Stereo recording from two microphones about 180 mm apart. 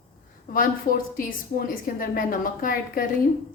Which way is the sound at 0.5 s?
50° left (ahead or behind).